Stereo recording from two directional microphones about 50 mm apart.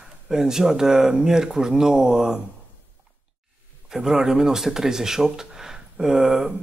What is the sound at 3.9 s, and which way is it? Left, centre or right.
Speech, centre.